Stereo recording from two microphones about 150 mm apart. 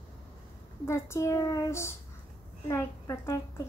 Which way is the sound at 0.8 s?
15° left (ahead or behind).